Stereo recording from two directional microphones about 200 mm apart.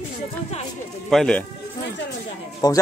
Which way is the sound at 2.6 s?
20° left (ahead or behind).